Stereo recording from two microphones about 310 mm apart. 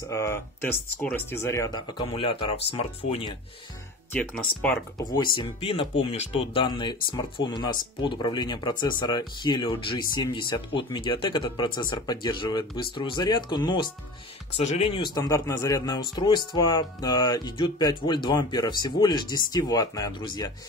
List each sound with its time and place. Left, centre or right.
0.1 s speech: centre
4.1 s speech: centre